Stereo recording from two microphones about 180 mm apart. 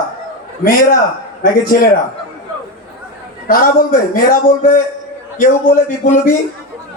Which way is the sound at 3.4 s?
50° left (ahead or behind).